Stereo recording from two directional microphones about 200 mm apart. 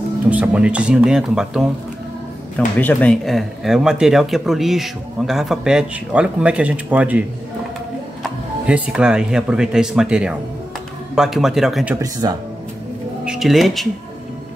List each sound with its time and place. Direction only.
0.3 s speech: 5° right (ahead or behind)
12.0 s speech: 20° right (ahead or behind)
13.2 s speech: centre (ahead or behind)